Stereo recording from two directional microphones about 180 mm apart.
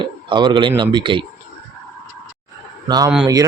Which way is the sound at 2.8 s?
20° right (ahead or behind).